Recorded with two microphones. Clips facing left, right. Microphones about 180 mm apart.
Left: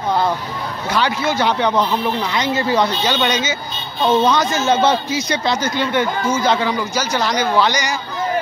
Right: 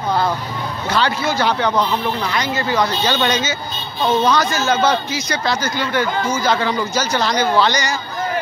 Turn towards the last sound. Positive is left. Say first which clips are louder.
# even
turn(degrees=15)  # may be behind; listen again after turning